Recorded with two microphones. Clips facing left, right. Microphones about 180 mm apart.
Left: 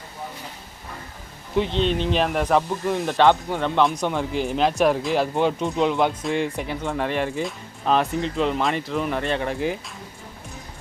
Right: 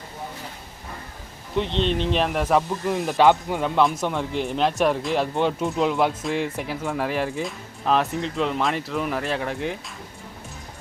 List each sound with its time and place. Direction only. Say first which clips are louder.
1.5 s speech: left 1 dB; centre (ahead or behind)